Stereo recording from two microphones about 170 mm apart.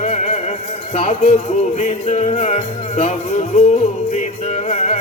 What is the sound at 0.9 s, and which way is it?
Speech, 35° left (ahead or behind).